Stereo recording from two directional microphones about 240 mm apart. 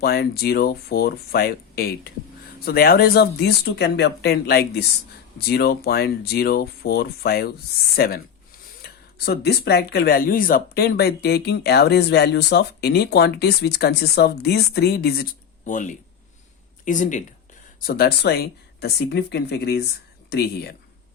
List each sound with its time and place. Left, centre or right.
0.0 s speech: left